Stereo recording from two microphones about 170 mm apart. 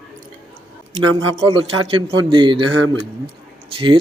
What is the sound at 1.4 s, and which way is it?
A man's voice, 35° right (ahead or behind).